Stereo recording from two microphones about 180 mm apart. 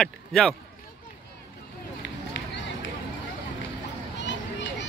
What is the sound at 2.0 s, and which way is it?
Run, 80° left.